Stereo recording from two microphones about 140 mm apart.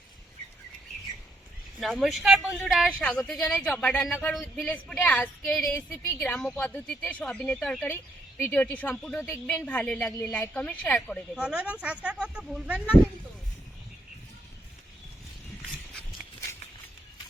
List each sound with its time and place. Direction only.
1.8 s speech: centre (ahead or behind)
4.7 s speech: 10° left (ahead or behind)
6.1 s speech: 15° left (ahead or behind)
9.2 s a woman's voice: 20° left (ahead or behind)
11.3 s speech: 10° right (ahead or behind)